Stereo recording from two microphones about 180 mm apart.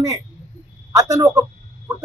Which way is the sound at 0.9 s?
20° right (ahead or behind).